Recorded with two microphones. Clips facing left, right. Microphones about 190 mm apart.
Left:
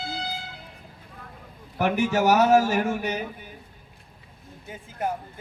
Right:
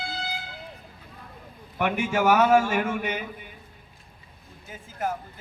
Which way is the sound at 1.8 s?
40° left (ahead or behind).